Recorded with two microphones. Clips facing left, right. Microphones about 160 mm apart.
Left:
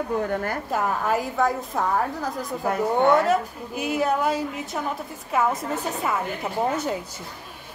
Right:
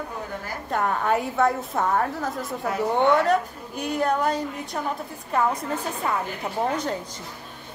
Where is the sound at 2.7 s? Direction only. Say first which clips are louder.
Left 1 dB; 45° left (ahead or behind).